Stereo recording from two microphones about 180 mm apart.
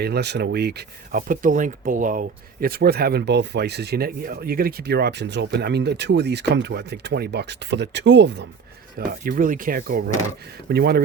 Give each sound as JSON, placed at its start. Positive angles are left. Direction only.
{"t": 0.0, "sound": "speech", "side_deg": -65}
{"t": 9.0, "sound": "speech", "side_deg": -50}